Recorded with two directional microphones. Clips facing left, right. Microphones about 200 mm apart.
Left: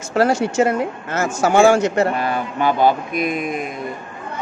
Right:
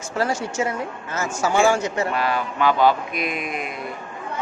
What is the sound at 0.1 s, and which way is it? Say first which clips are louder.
Speech: left 7 dB; 70° left (ahead or behind).